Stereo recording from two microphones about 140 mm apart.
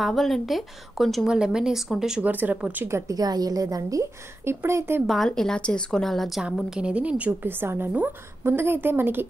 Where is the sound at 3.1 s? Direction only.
30° right (ahead or behind).